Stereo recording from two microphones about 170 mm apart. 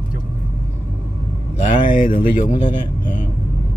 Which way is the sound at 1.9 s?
55° left (ahead or behind).